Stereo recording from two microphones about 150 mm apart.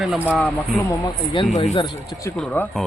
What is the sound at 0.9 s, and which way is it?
Speech, 35° left (ahead or behind).